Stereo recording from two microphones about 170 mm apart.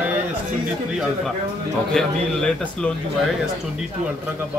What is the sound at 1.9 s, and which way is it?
Speech, 5° left (ahead or behind).